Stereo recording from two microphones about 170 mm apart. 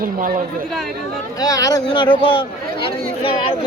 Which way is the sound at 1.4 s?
20° left (ahead or behind).